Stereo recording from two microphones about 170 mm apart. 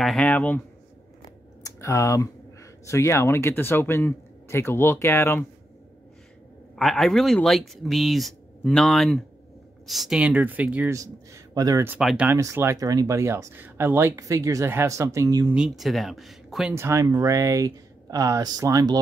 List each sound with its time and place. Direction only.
0.0 s speech: 5° left (ahead or behind)
1.6 s speech: 20° left (ahead or behind)
6.7 s speech: centre (ahead or behind)
11.0 s a man's voice: 20° right (ahead or behind)
12.0 s speech: centre (ahead or behind)
12.3 s speech: 15° right (ahead or behind)
15.5 s speech: 5° right (ahead or behind)
16.7 s speech: 15° right (ahead or behind)